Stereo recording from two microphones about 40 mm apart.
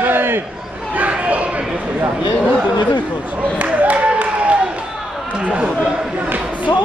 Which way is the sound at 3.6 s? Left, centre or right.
Right.